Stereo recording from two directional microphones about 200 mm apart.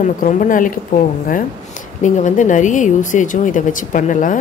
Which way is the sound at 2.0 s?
40° left (ahead or behind).